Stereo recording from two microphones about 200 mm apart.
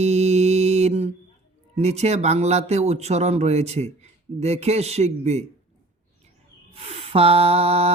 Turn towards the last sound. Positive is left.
turn(degrees=-30)  # may be behind; listen again after turning